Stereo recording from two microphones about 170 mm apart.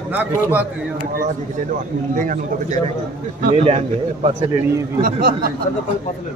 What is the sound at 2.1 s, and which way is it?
Speech, 50° right (ahead or behind).